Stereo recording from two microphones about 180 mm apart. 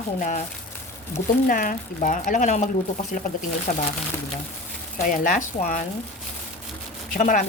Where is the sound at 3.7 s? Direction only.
40° left (ahead or behind).